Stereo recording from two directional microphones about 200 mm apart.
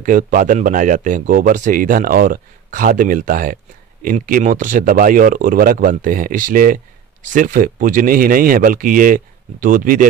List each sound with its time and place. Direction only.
0.0 s speech: 40° right (ahead or behind)